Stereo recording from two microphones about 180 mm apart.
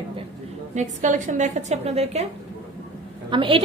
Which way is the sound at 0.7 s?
45° right (ahead or behind).